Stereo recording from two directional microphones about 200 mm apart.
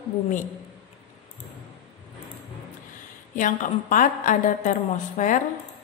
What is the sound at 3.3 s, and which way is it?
A woman's voice, 40° left (ahead or behind).